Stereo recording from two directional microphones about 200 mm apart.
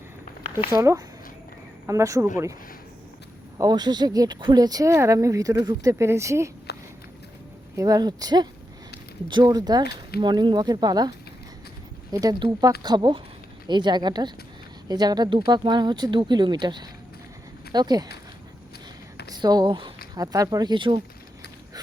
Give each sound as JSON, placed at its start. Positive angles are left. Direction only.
{"t": 0.7, "sound": "speech", "side_deg": -15}
{"t": 3.6, "sound": "speech", "side_deg": -20}
{"t": 6.7, "sound": "a sound", "side_deg": 55}
{"t": 7.8, "sound": "speech", "side_deg": -20}
{"t": 9.8, "sound": "speech", "side_deg": 50}
{"t": 10.2, "sound": "speech", "side_deg": -25}
{"t": 12.1, "sound": "speech", "side_deg": -20}
{"t": 19.3, "sound": "speech", "side_deg": -20}